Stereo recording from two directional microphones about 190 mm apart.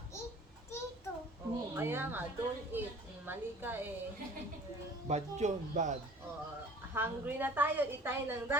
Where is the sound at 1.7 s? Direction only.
10° right (ahead or behind).